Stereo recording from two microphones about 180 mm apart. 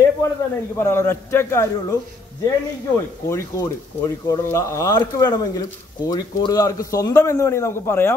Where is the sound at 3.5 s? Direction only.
15° left (ahead or behind).